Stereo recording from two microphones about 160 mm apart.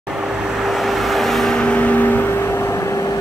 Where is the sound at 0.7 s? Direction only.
Centre (ahead or behind).